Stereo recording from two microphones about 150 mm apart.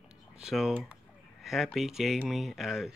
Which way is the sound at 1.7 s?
Centre (ahead or behind).